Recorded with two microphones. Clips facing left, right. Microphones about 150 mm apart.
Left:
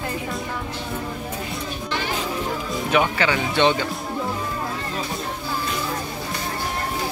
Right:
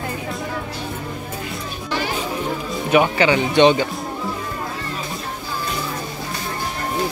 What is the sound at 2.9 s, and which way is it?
Speech, 15° right (ahead or behind).